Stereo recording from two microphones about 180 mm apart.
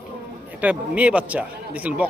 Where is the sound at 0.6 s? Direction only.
10° right (ahead or behind).